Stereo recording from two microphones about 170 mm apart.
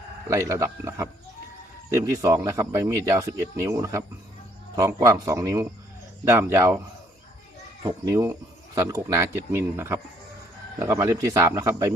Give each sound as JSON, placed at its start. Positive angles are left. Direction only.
{"t": 0.3, "sound": "speech", "side_deg": -15}
{"t": 7.9, "sound": "speech", "side_deg": -20}